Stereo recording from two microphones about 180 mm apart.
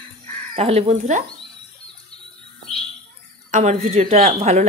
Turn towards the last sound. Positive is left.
turn(degrees=-40)  # may be behind; listen again after turning